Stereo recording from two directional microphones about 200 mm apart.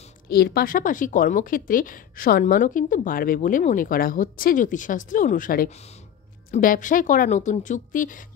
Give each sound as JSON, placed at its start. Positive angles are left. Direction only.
{"t": 0.3, "sound": "a woman's voice", "side_deg": 50}
{"t": 5.7, "sound": "a woman's voice", "side_deg": 30}